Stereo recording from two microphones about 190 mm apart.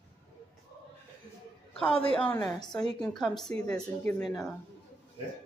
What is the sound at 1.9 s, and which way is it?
Speech, 30° left (ahead or behind).